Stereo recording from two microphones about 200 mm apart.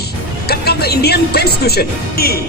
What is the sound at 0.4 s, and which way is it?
A man's voice, 50° left (ahead or behind).